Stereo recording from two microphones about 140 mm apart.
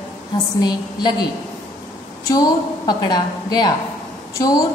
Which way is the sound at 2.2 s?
25° left (ahead or behind).